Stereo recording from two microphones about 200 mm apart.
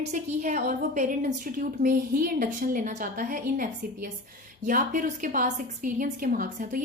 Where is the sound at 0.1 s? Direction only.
40° right (ahead or behind).